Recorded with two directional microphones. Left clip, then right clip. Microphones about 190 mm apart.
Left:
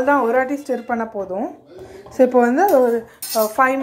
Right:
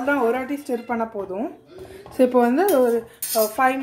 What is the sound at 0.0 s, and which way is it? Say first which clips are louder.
Speech: left 5 dB; centre (ahead or behind).